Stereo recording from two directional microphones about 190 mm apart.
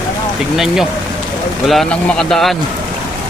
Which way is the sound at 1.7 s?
Centre (ahead or behind).